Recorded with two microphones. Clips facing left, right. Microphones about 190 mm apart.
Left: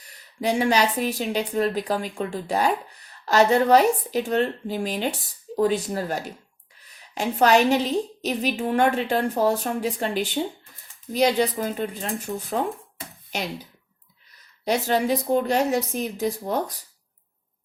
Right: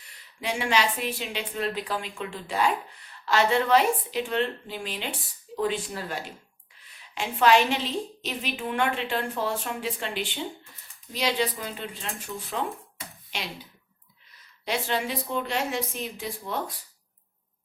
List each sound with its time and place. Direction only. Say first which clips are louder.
0.0 s a woman's voice: left 8 dB; 40° left (ahead or behind)
14.6 s a woman's voice: left 6 dB; 40° left (ahead or behind)